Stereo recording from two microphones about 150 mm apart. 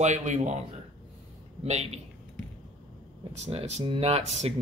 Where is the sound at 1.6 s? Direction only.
50° right (ahead or behind).